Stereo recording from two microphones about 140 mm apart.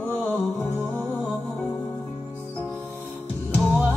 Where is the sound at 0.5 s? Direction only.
15° left (ahead or behind).